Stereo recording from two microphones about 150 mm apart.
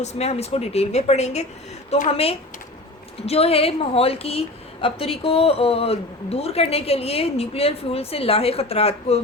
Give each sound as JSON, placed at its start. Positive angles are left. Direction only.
{"t": 0.0, "sound": "a woman's voice", "side_deg": 45}